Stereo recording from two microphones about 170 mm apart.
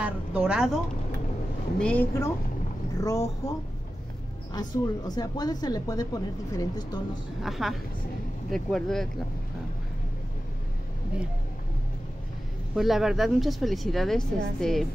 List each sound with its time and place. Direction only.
0.0 s speech: 5° right (ahead or behind)
1.8 s a woman's voice: 10° left (ahead or behind)
4.6 s a woman's voice: 25° left (ahead or behind)
7.4 s speech: centre (ahead or behind)
12.7 s speech: centre (ahead or behind)